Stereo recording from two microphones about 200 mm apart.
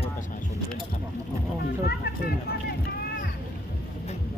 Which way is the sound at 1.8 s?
50° left (ahead or behind).